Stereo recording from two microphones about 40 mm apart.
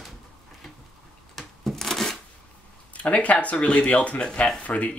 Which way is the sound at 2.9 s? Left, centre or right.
Left.